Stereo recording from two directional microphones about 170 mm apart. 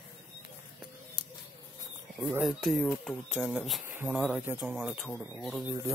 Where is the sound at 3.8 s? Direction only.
10° right (ahead or behind).